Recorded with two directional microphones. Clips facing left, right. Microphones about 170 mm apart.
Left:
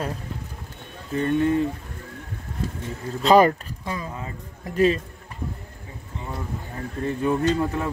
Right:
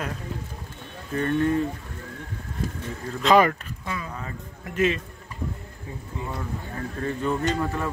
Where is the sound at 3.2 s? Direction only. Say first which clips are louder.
Left 3 dB; 35° left (ahead or behind).